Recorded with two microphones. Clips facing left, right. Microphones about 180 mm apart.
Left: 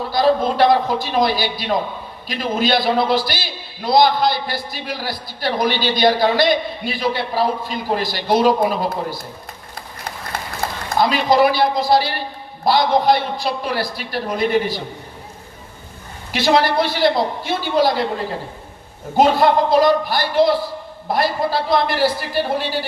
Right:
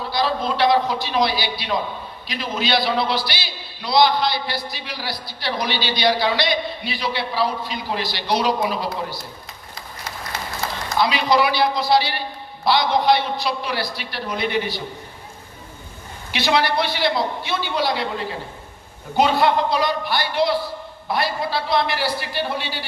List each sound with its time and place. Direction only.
0.1 s a man's voice: 45° left (ahead or behind)
9.7 s a sound: 55° left (ahead or behind)
10.8 s a man's voice: 45° left (ahead or behind)
16.3 s a man's voice: 45° left (ahead or behind)
19.1 s a man's voice: 45° left (ahead or behind)